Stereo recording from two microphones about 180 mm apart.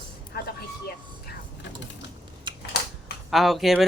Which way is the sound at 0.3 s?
60° left (ahead or behind).